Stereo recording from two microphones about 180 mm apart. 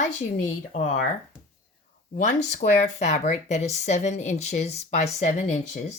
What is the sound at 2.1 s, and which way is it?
Speech, 45° left (ahead or behind).